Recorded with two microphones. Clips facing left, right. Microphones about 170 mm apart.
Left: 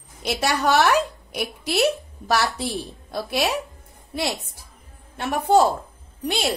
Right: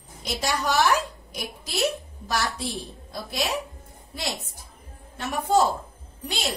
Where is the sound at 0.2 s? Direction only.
65° left (ahead or behind).